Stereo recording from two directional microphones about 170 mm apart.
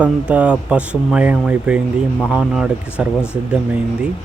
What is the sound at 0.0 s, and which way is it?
Speech, 5° right (ahead or behind).